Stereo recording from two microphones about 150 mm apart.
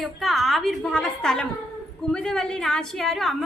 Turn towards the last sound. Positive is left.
turn(degrees=0)  # may be behind; listen again after turning